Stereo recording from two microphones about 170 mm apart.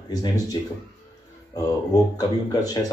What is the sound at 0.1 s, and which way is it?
Speech, 20° left (ahead or behind).